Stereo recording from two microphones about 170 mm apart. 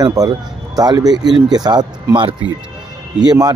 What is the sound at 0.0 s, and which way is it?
Speech, 25° right (ahead or behind).